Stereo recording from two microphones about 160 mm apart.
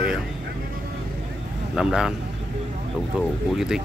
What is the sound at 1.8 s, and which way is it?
Speech, 5° right (ahead or behind).